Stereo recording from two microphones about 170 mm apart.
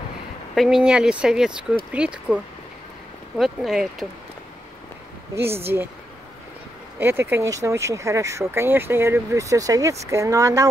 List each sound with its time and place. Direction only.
0.6 s speech: 5° right (ahead or behind)
5.3 s speech: 15° right (ahead or behind)
7.0 s speech: 15° right (ahead or behind)